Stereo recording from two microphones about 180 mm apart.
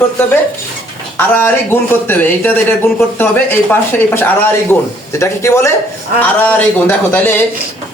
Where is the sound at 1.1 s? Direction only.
10° left (ahead or behind).